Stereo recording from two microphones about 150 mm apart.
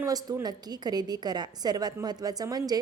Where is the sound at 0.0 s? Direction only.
25° right (ahead or behind).